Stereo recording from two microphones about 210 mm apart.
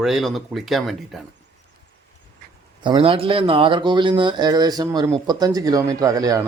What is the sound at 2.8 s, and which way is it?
Speech, 25° right (ahead or behind).